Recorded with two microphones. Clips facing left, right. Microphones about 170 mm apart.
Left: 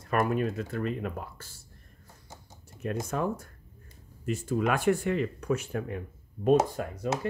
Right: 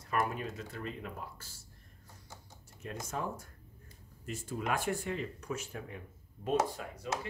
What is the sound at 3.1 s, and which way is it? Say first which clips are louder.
Speech: left 6 dB; 60° left (ahead or behind).